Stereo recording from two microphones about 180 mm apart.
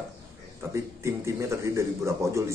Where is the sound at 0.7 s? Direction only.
15° right (ahead or behind).